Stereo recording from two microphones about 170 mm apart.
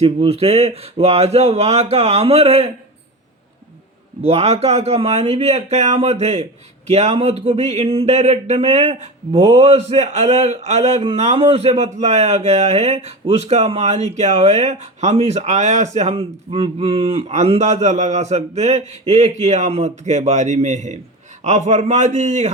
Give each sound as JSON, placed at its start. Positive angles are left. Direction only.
{"t": 0.0, "sound": "speech", "side_deg": -35}
{"t": 4.2, "sound": "a man's voice", "side_deg": -35}